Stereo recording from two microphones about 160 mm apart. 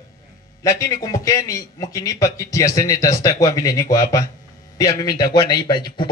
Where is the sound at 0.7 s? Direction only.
20° left (ahead or behind).